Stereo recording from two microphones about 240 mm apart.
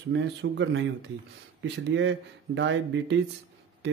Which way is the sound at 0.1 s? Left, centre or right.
Right.